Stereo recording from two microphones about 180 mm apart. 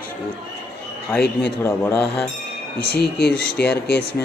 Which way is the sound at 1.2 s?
65° left (ahead or behind).